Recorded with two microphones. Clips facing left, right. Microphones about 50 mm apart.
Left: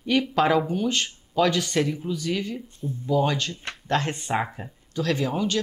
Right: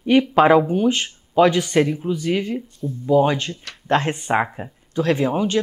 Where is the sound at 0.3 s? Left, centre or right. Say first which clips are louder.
Right 7 dB; right.